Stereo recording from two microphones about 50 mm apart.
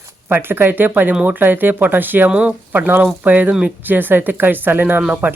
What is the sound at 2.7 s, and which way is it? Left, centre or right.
Speech, right.